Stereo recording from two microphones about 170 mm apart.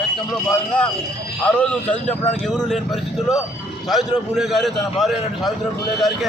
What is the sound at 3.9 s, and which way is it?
A man's voice, centre (ahead or behind).